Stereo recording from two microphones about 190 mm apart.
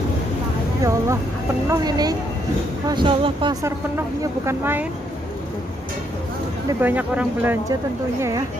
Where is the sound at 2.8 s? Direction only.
25° right (ahead or behind).